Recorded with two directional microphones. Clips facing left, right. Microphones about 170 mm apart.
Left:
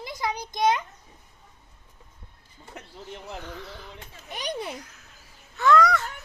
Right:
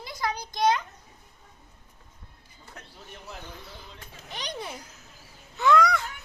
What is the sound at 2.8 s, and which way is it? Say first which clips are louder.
Speech: left 6 dB; 20° left (ahead or behind).